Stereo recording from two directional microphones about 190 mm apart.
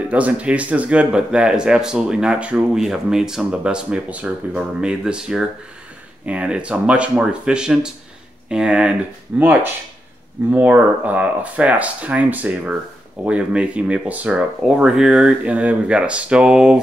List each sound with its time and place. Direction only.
0.1 s speech: 5° right (ahead or behind)